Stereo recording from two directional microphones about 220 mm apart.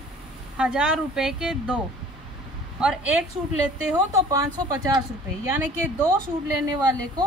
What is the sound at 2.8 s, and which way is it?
Speech, 5° right (ahead or behind).